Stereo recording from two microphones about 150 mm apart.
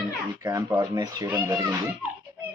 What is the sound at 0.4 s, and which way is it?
Speech, 25° right (ahead or behind).